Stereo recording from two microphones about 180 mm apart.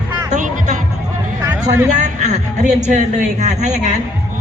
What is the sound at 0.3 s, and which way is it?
Music, 45° right (ahead or behind).